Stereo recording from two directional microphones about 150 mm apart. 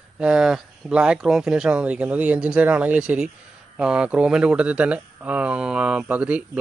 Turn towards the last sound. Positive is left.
turn(degrees=-10)  # may be behind; listen again after turning